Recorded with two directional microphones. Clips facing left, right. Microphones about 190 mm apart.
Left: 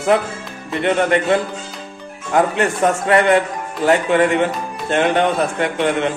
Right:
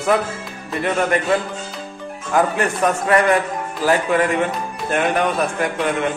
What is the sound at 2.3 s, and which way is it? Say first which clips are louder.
A man's voice: left 2 dB; 25° left (ahead or behind).